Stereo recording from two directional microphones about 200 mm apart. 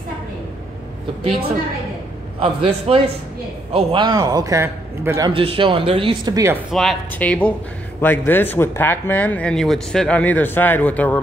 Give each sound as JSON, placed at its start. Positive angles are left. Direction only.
{"t": 2.4, "sound": "a man's voice", "side_deg": -25}
{"t": 5.3, "sound": "a man's voice", "side_deg": -25}
{"t": 6.7, "sound": "speech", "side_deg": 0}